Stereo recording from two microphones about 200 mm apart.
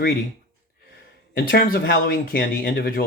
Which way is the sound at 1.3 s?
50° left (ahead or behind).